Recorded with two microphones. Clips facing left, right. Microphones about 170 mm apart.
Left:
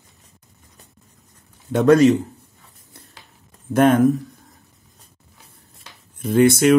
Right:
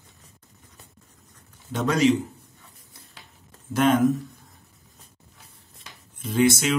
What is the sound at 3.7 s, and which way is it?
Speech, 55° left (ahead or behind).